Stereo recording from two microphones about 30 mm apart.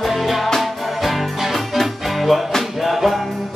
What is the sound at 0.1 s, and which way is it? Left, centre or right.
Music, centre.